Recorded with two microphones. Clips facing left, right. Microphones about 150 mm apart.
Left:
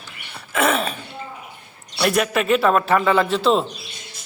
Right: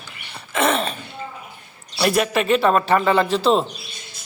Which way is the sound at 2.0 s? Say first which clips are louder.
Right 1 dB; centre (ahead or behind).